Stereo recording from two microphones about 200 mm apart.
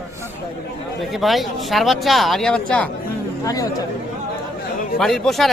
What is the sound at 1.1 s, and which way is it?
Speech, centre (ahead or behind).